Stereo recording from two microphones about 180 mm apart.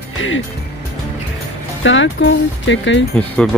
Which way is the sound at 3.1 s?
5° left (ahead or behind).